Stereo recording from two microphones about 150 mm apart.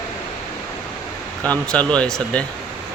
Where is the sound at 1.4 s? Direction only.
10° left (ahead or behind).